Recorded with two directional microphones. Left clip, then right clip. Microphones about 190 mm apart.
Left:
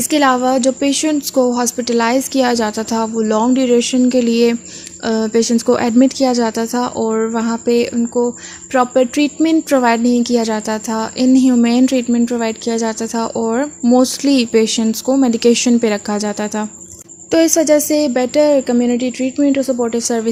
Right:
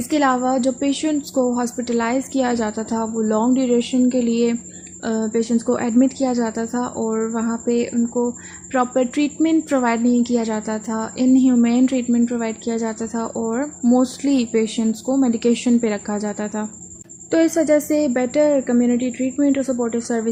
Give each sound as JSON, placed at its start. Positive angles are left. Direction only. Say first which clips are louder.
{"t": 0.1, "sound": "speech", "louder": "left 5 dB", "side_deg": 40}